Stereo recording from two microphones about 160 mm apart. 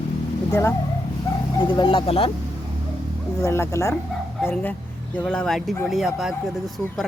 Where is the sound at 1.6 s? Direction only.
30° left (ahead or behind).